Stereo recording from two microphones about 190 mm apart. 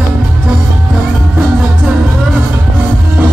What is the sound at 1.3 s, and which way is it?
Music, 5° right (ahead or behind).